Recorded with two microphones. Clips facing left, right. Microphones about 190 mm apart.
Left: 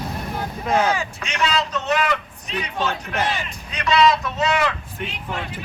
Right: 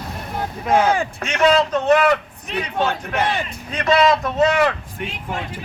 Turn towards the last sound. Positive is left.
turn(degrees=-50)  # may be behind; listen again after turning